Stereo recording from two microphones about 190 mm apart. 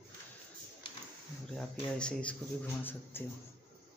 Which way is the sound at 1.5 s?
5° left (ahead or behind).